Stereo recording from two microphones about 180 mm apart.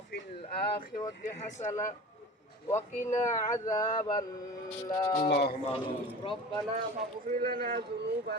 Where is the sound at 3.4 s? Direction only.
20° left (ahead or behind).